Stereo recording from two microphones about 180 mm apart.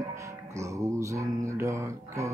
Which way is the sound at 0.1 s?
15° right (ahead or behind).